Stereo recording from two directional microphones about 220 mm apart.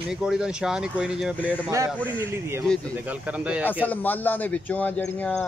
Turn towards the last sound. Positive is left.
turn(degrees=5)  # may be behind; listen again after turning